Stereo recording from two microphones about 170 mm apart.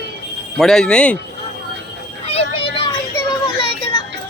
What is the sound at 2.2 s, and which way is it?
Vehicle, 35° left (ahead or behind).